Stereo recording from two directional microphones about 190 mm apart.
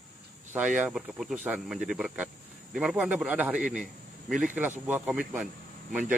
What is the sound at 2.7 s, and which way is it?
Speech, 5° right (ahead or behind).